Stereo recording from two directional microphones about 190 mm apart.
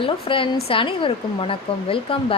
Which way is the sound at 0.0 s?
30° left (ahead or behind).